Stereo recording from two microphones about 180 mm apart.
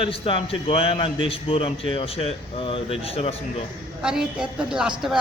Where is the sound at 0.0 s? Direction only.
30° left (ahead or behind).